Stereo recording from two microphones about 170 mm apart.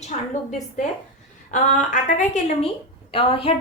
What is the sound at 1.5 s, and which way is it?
A woman's voice, 50° left (ahead or behind).